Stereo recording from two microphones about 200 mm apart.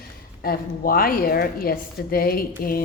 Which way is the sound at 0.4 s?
45° left (ahead or behind).